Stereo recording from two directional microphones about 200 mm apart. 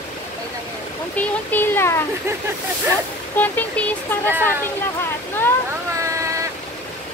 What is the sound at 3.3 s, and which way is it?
Speech, 10° left (ahead or behind).